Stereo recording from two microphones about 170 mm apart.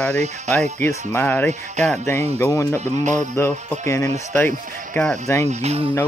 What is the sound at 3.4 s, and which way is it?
Speech, 15° left (ahead or behind).